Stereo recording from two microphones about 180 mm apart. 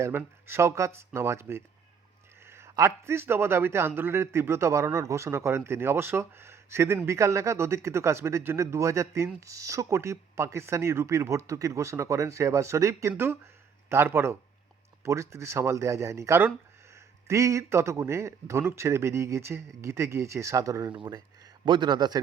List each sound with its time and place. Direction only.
0.0 s a man's voice: 15° right (ahead or behind)